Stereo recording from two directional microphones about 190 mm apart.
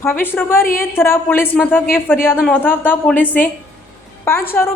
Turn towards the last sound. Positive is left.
turn(degrees=10)  # may be behind; listen again after turning